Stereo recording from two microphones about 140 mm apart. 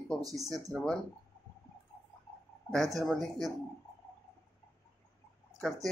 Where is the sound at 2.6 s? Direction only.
5° left (ahead or behind).